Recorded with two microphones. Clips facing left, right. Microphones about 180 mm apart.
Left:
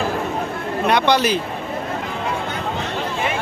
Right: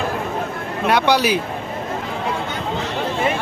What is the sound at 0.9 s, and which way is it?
Speech, 5° right (ahead or behind).